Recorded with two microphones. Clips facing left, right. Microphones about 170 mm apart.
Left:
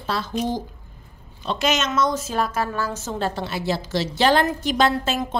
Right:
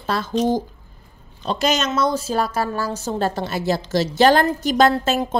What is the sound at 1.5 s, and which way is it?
A woman's voice, 35° right (ahead or behind).